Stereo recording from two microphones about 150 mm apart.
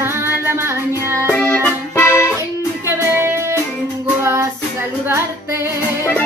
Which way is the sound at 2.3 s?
15° right (ahead or behind).